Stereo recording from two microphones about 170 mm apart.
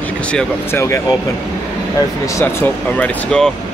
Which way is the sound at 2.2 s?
15° left (ahead or behind).